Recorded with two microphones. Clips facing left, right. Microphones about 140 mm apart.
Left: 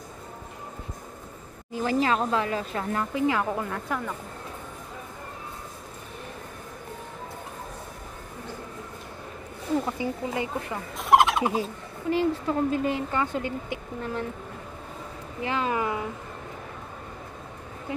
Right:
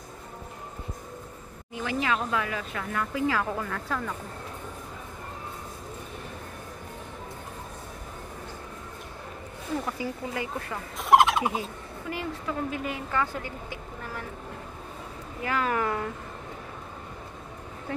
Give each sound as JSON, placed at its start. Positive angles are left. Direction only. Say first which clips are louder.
{"t": 1.7, "sound": "speech", "louder": "left 4 dB", "side_deg": 35}
{"t": 9.8, "sound": "a woman's voice", "louder": "left 3 dB", "side_deg": 25}
{"t": 11.0, "sound": "turkey", "louder": "even", "side_deg": 0}
{"t": 11.5, "sound": "a woman's voice", "louder": "left 4 dB", "side_deg": 30}
{"t": 15.4, "sound": "speech", "louder": "even", "side_deg": 20}